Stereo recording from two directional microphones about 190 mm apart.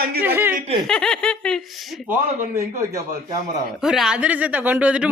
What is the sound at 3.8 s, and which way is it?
Speech, 5° right (ahead or behind).